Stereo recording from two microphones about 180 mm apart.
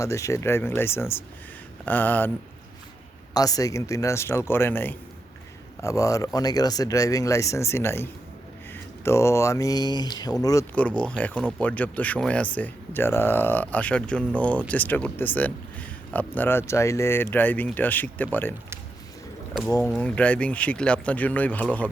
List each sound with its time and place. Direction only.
0.0 s speech: 15° left (ahead or behind)
3.3 s speech: 20° left (ahead or behind)
19.6 s speech: 10° left (ahead or behind)